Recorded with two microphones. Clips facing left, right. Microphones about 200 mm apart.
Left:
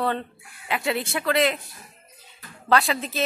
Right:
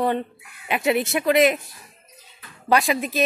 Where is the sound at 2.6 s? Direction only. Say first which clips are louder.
Right 2 dB; 15° right (ahead or behind).